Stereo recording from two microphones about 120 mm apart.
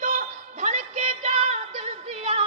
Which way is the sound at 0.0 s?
90° right.